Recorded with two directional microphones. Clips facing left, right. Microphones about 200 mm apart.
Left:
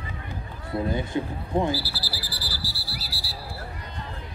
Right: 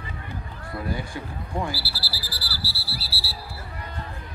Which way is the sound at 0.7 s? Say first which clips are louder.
Left 5 dB; 20° left (ahead or behind).